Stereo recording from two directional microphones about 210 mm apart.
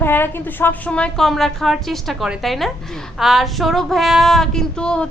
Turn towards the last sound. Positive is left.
turn(degrees=5)  # may be behind; listen again after turning